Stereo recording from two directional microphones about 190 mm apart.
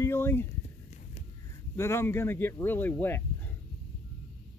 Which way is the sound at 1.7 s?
15° left (ahead or behind).